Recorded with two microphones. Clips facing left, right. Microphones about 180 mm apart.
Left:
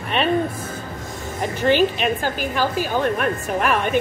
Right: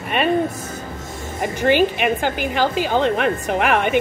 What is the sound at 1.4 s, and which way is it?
A woman's voice, 10° right (ahead or behind).